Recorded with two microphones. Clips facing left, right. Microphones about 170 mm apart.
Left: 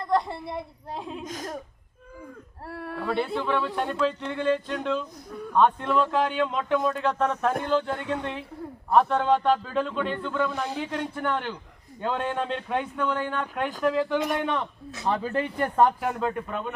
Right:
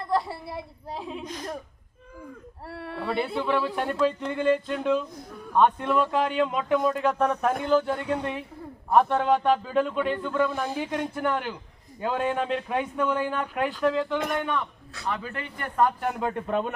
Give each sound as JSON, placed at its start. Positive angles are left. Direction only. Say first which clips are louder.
{"t": 0.1, "sound": "a woman's voice", "louder": "left 2 dB", "side_deg": -5}
{"t": 1.2, "sound": "speech", "louder": "left 1 dB", "side_deg": 45}
{"t": 2.7, "sound": "speech", "louder": "left 1 dB", "side_deg": 0}
{"t": 13.8, "sound": "speech", "louder": "left 2 dB", "side_deg": 5}
{"t": 14.3, "sound": "speech", "louder": "left 1 dB", "side_deg": 25}